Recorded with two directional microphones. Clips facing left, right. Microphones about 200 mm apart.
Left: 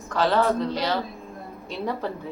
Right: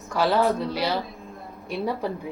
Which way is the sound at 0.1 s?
10° right (ahead or behind).